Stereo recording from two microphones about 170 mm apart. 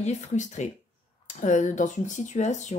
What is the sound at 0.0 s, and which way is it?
Speech, 45° left (ahead or behind).